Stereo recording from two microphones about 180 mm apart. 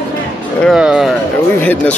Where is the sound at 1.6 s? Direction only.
10° left (ahead or behind).